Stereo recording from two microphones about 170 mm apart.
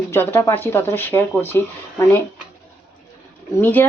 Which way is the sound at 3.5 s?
10° left (ahead or behind).